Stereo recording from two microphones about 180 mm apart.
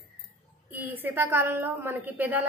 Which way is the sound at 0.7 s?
10° right (ahead or behind).